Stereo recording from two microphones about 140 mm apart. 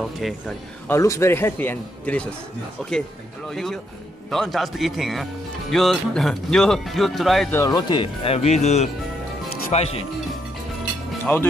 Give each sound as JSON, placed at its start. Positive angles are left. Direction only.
{"t": 0.2, "sound": "speech", "side_deg": 0}
{"t": 0.8, "sound": "speech", "side_deg": 20}
{"t": 7.5, "sound": "speech", "side_deg": 25}
{"t": 11.3, "sound": "speech", "side_deg": 10}